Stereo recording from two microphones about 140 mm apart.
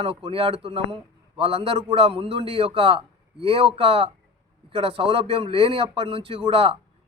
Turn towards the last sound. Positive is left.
turn(degrees=-40)  # may be behind; listen again after turning